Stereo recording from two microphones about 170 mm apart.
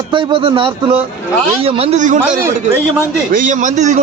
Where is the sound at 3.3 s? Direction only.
50° right (ahead or behind).